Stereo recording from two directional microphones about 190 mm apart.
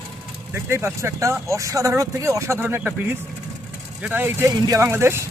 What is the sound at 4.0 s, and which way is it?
Speech, 10° right (ahead or behind).